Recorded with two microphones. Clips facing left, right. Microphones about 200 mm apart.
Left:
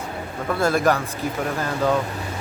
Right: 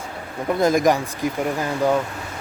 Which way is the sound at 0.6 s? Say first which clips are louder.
Right 2 dB; 15° right (ahead or behind).